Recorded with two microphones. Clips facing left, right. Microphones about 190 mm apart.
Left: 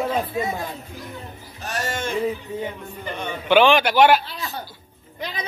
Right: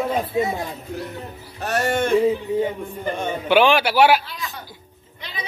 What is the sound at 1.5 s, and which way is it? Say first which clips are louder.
Speech: right 7 dB; 60° right (ahead or behind).